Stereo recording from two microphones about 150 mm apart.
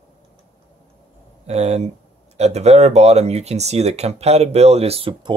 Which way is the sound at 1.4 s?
45° right (ahead or behind).